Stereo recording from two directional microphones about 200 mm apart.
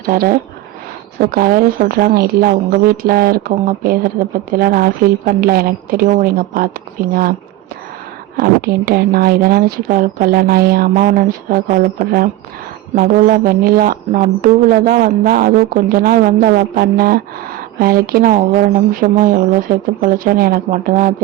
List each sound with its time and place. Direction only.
0.0 s speech: 50° right (ahead or behind)
8.4 s speech: 50° right (ahead or behind)